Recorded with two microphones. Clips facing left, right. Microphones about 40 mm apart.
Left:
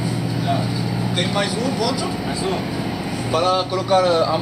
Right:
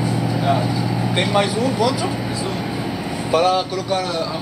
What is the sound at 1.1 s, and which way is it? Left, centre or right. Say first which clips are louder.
Speech: right 4 dB; centre.